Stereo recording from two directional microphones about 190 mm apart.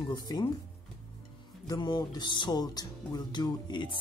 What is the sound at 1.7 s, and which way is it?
Speech, 20° left (ahead or behind).